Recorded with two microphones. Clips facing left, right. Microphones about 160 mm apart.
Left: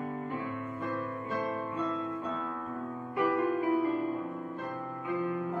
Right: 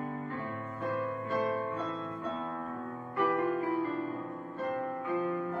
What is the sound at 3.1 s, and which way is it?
Music, 15° left (ahead or behind).